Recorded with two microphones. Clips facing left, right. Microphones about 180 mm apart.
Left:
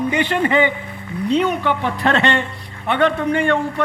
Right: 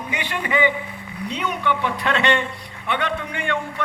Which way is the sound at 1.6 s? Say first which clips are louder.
Left 3 dB; 40° left (ahead or behind).